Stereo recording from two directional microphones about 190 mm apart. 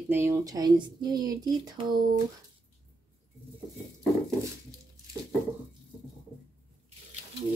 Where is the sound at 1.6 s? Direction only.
20° right (ahead or behind).